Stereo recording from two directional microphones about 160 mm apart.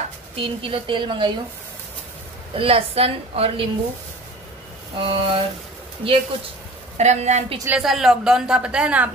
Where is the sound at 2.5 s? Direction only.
35° right (ahead or behind).